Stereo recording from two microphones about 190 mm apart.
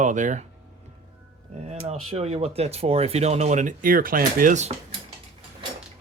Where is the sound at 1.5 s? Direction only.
35° right (ahead or behind).